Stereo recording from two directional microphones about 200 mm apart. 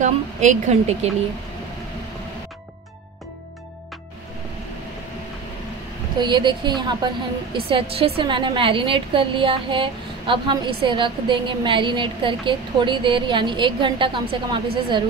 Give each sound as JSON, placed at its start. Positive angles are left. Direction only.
{"t": 0.0, "sound": "a woman's voice", "side_deg": -35}
{"t": 6.1, "sound": "a woman's voice", "side_deg": -20}